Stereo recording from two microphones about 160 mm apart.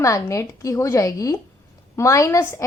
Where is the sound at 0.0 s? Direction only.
20° left (ahead or behind).